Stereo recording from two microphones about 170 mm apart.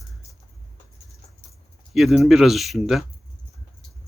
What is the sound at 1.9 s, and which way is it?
Speech, centre (ahead or behind).